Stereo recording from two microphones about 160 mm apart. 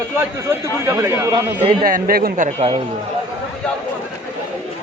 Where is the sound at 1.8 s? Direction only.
65° right (ahead or behind).